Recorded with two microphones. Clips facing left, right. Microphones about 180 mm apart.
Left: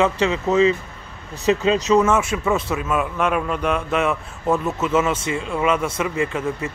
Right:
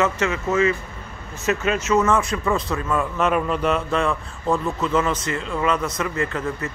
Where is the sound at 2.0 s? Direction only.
5° left (ahead or behind).